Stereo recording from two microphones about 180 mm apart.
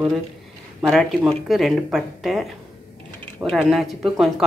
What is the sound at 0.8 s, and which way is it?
Speech, centre (ahead or behind).